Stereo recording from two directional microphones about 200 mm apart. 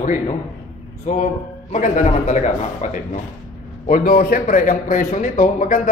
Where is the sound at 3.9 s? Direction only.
50° left (ahead or behind).